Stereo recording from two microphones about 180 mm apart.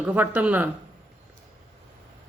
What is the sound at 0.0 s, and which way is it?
Speech, 5° right (ahead or behind).